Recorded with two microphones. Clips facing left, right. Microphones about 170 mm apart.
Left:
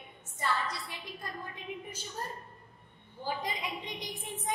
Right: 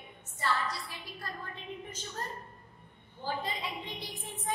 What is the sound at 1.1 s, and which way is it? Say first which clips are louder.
Speech: right 1 dB; 15° left (ahead or behind).